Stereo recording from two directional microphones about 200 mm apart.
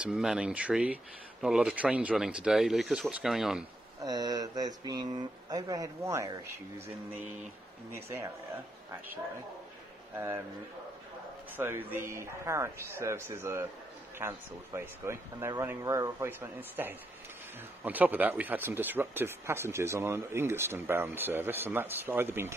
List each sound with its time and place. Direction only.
0.0 s speech: 5° right (ahead or behind)
4.0 s speech: 20° right (ahead or behind)
7.9 s speech: 10° right (ahead or behind)
10.1 s speech: 10° right (ahead or behind)
11.5 s speech: 10° right (ahead or behind)